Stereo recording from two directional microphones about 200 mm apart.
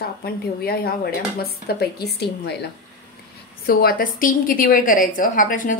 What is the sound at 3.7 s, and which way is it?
A woman's voice, 50° left (ahead or behind).